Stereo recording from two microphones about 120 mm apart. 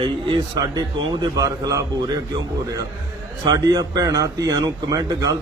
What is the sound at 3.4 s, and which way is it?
A man's voice, 30° right (ahead or behind).